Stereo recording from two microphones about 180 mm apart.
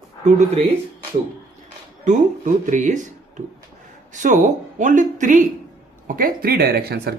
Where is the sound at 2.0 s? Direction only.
45° right (ahead or behind).